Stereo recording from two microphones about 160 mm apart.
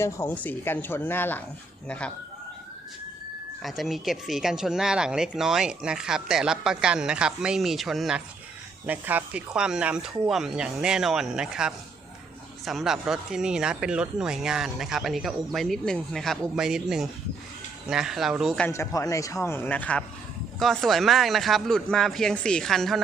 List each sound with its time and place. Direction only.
0.0 s speech: 15° left (ahead or behind)
3.6 s speech: centre (ahead or behind)
18.7 s speech: 20° left (ahead or behind); by 23.0 s centre (ahead or behind)